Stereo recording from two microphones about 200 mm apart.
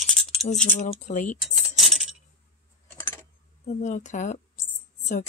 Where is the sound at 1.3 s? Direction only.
Centre (ahead or behind).